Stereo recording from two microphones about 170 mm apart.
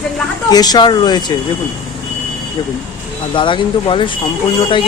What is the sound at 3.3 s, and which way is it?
Speech, 30° left (ahead or behind).